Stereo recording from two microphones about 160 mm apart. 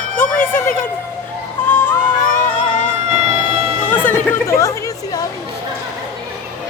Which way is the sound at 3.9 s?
10° left (ahead or behind).